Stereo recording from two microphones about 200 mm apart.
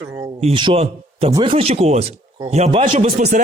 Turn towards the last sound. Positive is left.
turn(degrees=-35)  # may be behind; listen again after turning